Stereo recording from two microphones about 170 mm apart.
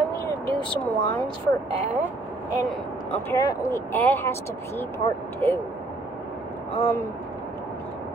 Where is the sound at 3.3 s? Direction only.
20° left (ahead or behind).